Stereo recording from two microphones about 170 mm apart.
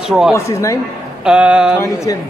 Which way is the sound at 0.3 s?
15° left (ahead or behind).